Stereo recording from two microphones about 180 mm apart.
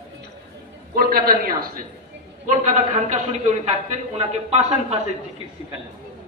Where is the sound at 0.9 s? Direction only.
55° right (ahead or behind).